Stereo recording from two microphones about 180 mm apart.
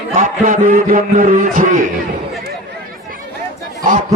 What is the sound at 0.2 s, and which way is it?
A man's voice, 45° right (ahead or behind).